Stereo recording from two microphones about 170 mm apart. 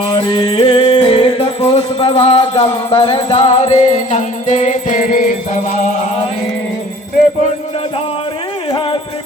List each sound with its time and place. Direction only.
0.1 s music: 30° left (ahead or behind); by 5.4 s 55° left (ahead or behind)